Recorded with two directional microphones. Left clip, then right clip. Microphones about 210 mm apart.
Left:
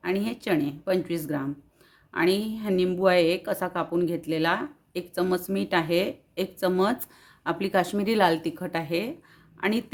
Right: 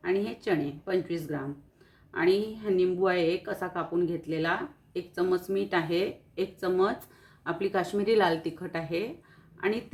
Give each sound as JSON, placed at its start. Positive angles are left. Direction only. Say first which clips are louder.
{"t": 0.0, "sound": "a woman's voice", "louder": "even", "side_deg": 45}